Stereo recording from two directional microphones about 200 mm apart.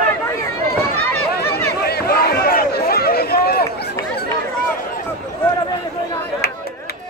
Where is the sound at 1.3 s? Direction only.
50° left (ahead or behind).